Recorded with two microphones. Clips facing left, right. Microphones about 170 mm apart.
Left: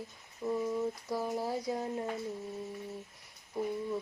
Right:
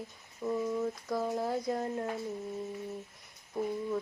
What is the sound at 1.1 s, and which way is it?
Speech, 10° left (ahead or behind).